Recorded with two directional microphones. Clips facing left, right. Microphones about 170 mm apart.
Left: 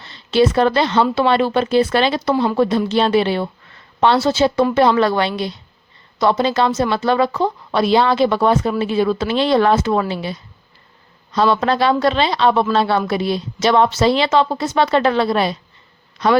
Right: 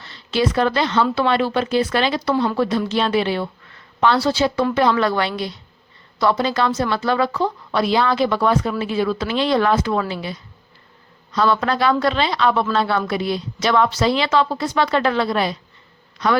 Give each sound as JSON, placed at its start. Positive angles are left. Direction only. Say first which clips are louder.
{"t": 0.0, "sound": "a woman's voice", "louder": "left 5 dB", "side_deg": 25}